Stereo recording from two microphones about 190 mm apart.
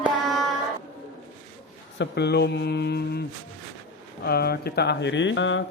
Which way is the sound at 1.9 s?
65° left (ahead or behind).